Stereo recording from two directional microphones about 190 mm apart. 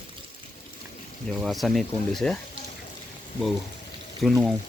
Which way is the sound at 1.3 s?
Centre (ahead or behind).